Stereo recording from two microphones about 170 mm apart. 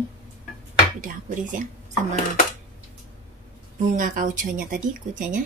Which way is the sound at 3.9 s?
50° right (ahead or behind).